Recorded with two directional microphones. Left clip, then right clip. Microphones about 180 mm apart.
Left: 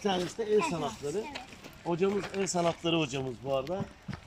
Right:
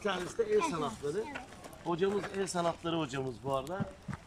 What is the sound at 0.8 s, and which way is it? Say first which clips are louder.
Speech: left 1 dB; 15° left (ahead or behind).